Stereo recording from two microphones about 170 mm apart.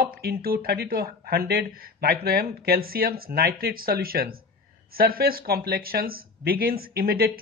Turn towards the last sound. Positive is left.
turn(degrees=-65)  # may be behind; listen again after turning